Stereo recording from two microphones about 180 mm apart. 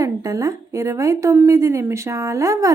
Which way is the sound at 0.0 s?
15° right (ahead or behind).